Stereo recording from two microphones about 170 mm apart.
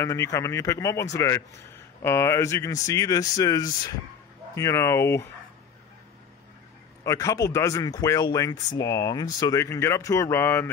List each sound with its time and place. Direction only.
0.0 s speech: 15° left (ahead or behind)
7.1 s speech: 20° left (ahead or behind)